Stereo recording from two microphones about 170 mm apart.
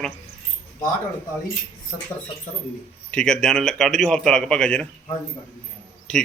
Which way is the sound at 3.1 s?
5° left (ahead or behind).